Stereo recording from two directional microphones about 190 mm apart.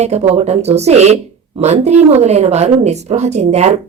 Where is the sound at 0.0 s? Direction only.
35° right (ahead or behind).